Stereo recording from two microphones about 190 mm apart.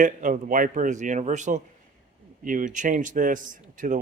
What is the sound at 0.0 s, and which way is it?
A man's voice, 45° right (ahead or behind).